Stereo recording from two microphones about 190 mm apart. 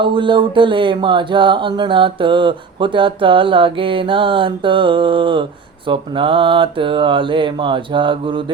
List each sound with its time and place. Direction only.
0.0 s speech: 25° right (ahead or behind)